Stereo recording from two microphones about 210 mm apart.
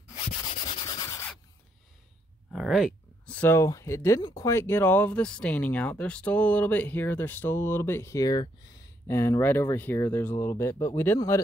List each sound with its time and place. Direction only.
0.1 s sanding: 20° left (ahead or behind)
2.5 s a sound: centre (ahead or behind)
3.3 s speech: 10° left (ahead or behind)